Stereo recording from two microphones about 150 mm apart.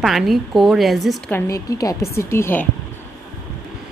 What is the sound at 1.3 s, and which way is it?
A woman's voice, 20° left (ahead or behind).